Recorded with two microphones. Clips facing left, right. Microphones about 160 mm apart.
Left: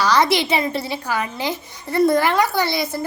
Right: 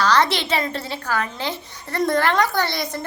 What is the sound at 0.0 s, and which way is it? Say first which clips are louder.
A woman's voice: left 2 dB; 10° left (ahead or behind).